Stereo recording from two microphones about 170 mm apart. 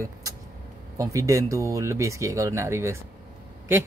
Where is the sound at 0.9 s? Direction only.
20° right (ahead or behind).